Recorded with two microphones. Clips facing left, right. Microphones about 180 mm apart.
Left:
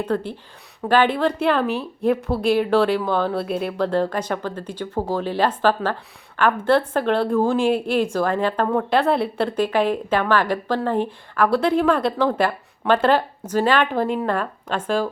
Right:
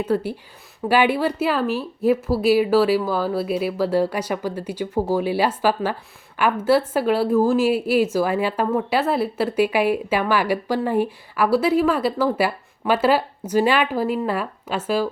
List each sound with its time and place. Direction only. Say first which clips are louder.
0.0 s a woman's voice: right 2 dB; 5° right (ahead or behind)